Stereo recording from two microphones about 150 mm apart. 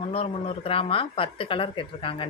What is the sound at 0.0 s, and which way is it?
Speech, 40° left (ahead or behind).